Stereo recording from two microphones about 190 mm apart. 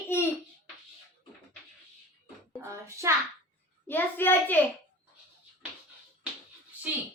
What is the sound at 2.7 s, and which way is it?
Speech, 15° right (ahead or behind).